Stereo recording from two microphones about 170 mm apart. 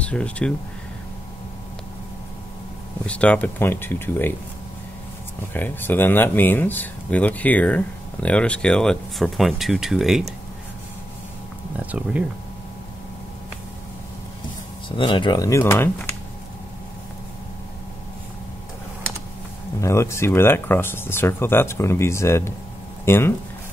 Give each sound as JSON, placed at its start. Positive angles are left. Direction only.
{"t": 0.0, "sound": "speech", "side_deg": 5}
{"t": 3.1, "sound": "speech", "side_deg": 5}
{"t": 5.5, "sound": "speech", "side_deg": 10}
{"t": 11.8, "sound": "speech", "side_deg": -10}
{"t": 15.0, "sound": "speech", "side_deg": 30}
{"t": 19.8, "sound": "speech", "side_deg": 15}